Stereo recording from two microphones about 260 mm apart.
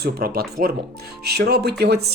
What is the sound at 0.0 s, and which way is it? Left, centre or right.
Speech, right.